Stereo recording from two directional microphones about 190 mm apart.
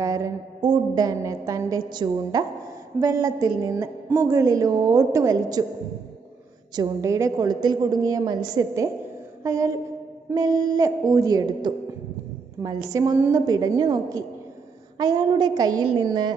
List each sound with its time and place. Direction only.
0.0 s a woman's voice: 20° right (ahead or behind)
6.7 s a woman's voice: 20° right (ahead or behind)